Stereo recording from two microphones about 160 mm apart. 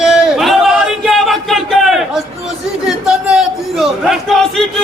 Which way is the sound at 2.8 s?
Centre (ahead or behind).